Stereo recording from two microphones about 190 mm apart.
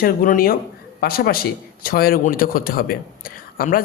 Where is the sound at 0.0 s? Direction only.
45° left (ahead or behind).